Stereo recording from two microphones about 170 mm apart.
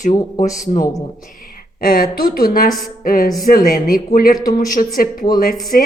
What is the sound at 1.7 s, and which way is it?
A man's voice, 60° left (ahead or behind).